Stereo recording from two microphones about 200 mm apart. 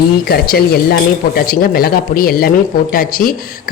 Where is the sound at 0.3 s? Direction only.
50° left (ahead or behind).